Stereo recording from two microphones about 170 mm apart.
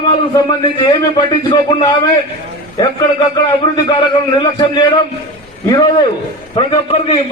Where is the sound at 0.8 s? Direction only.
25° left (ahead or behind).